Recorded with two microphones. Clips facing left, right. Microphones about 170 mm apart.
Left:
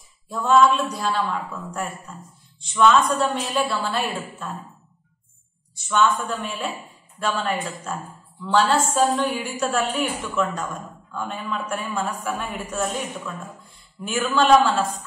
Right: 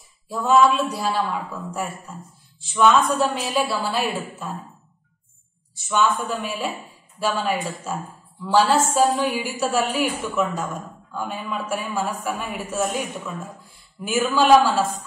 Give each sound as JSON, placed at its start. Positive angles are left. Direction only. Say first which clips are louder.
{"t": 0.3, "sound": "a woman's voice", "louder": "even", "side_deg": -5}
{"t": 5.9, "sound": "a woman's voice", "louder": "even", "side_deg": -5}